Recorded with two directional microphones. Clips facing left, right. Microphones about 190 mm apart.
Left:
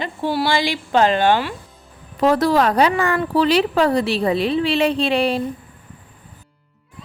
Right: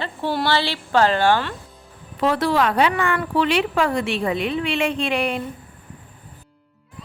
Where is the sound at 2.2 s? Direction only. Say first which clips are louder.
Left 4 dB; 40° left (ahead or behind).